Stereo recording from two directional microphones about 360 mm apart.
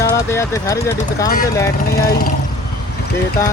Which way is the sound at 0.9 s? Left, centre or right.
Left.